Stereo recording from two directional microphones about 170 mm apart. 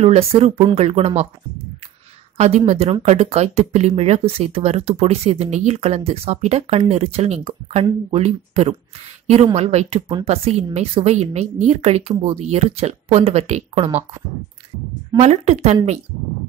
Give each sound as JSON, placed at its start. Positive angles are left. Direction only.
{"t": 0.0, "sound": "speech", "side_deg": -35}
{"t": 2.3, "sound": "speech", "side_deg": -35}
{"t": 15.1, "sound": "speech", "side_deg": -40}